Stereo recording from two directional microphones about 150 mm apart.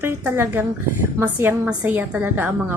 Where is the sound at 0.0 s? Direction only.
15° right (ahead or behind).